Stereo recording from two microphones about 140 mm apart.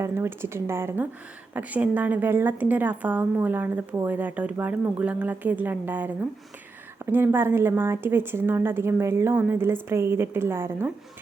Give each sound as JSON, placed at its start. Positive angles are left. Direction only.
{"t": 0.0, "sound": "a woman's voice", "side_deg": -15}